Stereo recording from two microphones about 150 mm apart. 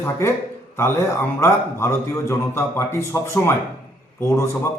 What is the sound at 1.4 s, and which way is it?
A man's voice, 20° left (ahead or behind).